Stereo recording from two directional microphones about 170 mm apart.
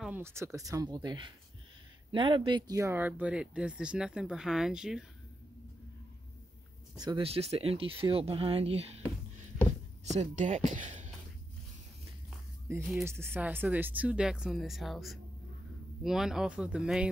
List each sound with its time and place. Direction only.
0.0 s speech: 10° right (ahead or behind)
7.0 s speech: 25° right (ahead or behind)
7.2 s speech: 35° right (ahead or behind)
10.0 s speech: 45° right (ahead or behind)
12.7 s speech: 15° right (ahead or behind)